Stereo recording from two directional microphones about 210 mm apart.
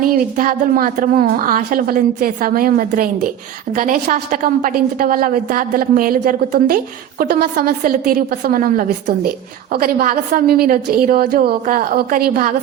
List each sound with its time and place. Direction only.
0.0 s a woman's voice: 45° right (ahead or behind)